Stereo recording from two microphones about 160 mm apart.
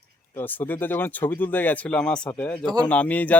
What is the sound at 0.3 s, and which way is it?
Speech, 10° left (ahead or behind).